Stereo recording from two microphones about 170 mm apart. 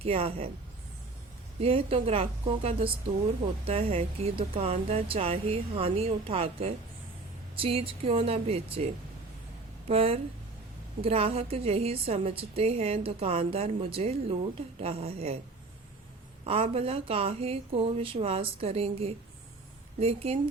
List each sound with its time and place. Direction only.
0.0 s speech: 35° right (ahead or behind)
1.6 s speech: 35° right (ahead or behind)
9.9 s speech: 35° right (ahead or behind)
16.4 s speech: 35° right (ahead or behind)